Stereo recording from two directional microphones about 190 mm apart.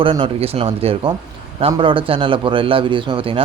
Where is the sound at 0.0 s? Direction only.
30° right (ahead or behind).